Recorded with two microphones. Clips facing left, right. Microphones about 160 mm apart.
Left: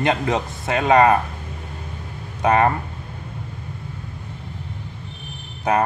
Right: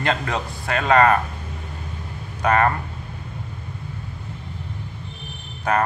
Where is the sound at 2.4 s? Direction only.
20° left (ahead or behind).